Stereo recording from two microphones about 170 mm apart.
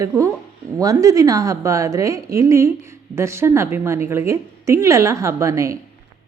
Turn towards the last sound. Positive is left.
turn(degrees=-20)  # may be behind; listen again after turning